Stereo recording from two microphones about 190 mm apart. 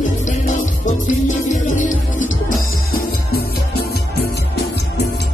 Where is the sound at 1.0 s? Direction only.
40° left (ahead or behind).